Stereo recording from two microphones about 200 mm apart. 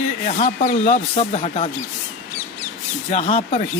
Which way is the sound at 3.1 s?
30° left (ahead or behind).